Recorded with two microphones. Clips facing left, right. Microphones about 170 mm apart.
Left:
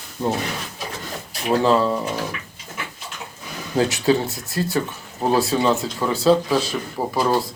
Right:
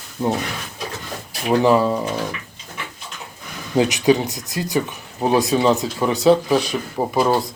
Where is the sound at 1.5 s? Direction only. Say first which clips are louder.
Right 2 dB; 15° right (ahead or behind).